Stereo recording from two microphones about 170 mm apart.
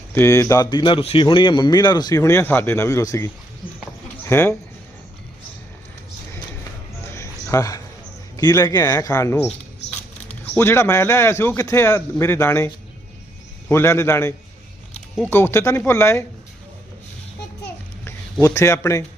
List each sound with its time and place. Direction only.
0.1 s a man's voice: 15° left (ahead or behind)
7.0 s a sound: 15° left (ahead or behind)
8.4 s speech: 25° left (ahead or behind)
10.5 s a man's voice: 15° left (ahead or behind)
18.0 s speech: 15° left (ahead or behind)